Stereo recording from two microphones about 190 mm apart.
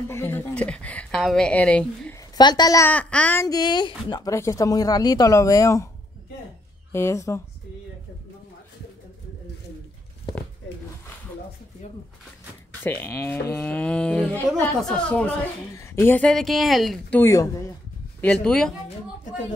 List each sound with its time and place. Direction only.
0.1 s a child's voice: 10° left (ahead or behind)
2.1 s a child's voice: 20° left (ahead or behind)
6.9 s a child's voice: 15° left (ahead or behind)
12.8 s a child's voice: 10° left (ahead or behind)
17.2 s a child's voice: 15° left (ahead or behind)
18.2 s speech: 5° left (ahead or behind)